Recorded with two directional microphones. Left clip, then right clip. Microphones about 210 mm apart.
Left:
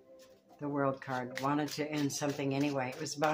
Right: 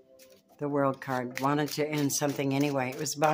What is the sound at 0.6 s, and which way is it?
Speech, 55° right (ahead or behind).